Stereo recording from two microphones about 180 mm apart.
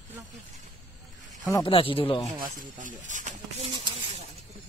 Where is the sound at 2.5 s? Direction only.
45° right (ahead or behind).